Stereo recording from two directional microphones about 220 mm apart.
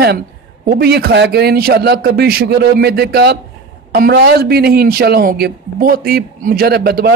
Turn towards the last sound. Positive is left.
turn(degrees=-45)  # may be behind; listen again after turning